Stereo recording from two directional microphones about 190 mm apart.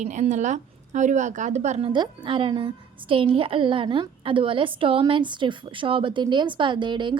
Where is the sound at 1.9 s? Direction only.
25° right (ahead or behind).